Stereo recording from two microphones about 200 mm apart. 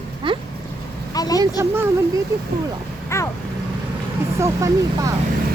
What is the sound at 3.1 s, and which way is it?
Speech, 15° left (ahead or behind).